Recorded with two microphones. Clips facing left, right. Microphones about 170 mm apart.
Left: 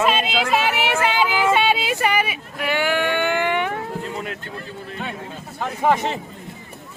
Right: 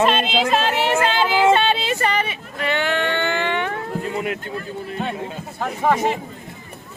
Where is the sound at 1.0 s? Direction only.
10° left (ahead or behind).